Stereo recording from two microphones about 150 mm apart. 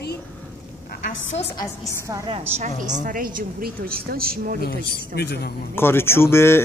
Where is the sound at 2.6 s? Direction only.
60° right (ahead or behind).